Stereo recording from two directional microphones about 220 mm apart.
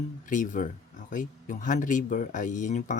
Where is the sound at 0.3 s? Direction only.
35° left (ahead or behind).